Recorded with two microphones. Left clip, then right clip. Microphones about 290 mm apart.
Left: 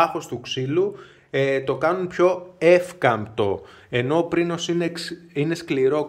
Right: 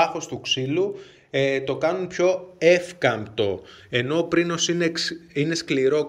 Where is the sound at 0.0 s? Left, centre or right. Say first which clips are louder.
Left 1 dB; centre.